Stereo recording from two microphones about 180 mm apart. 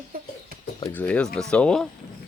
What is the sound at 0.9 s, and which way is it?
Speech, 5° left (ahead or behind).